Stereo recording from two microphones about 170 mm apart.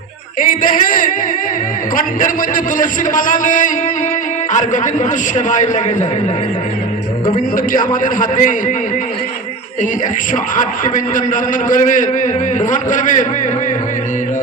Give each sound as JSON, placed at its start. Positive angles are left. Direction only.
{"t": 0.3, "sound": "a man's voice", "side_deg": 55}
{"t": 2.7, "sound": "a man's voice", "side_deg": 50}
{"t": 7.5, "sound": "a man's voice", "side_deg": 55}
{"t": 10.3, "sound": "a man's voice", "side_deg": 50}